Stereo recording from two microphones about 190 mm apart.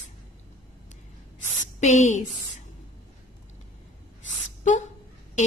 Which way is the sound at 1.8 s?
40° left (ahead or behind).